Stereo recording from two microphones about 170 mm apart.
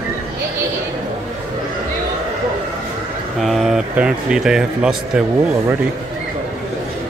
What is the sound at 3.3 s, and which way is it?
Speech, centre (ahead or behind).